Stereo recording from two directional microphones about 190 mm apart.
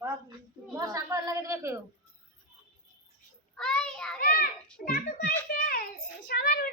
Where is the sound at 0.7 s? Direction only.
15° right (ahead or behind).